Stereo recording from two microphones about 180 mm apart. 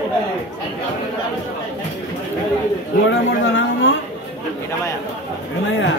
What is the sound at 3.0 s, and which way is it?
Speech, 90° left.